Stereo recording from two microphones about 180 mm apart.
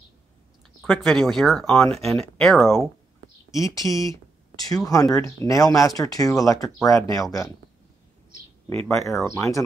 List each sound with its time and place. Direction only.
0.8 s speech: centre (ahead or behind)
3.5 s speech: 20° left (ahead or behind)
9.2 s speech: 15° left (ahead or behind)